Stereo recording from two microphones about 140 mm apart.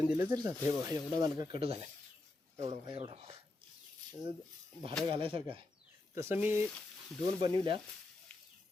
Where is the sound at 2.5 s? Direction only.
50° right (ahead or behind).